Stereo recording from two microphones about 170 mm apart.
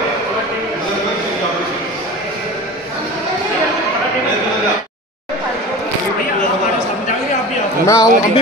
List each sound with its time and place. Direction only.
7.8 s speech: 20° left (ahead or behind)